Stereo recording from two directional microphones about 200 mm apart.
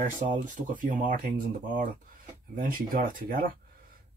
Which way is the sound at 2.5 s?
45° right (ahead or behind).